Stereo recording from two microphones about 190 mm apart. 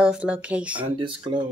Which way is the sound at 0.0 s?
5° right (ahead or behind).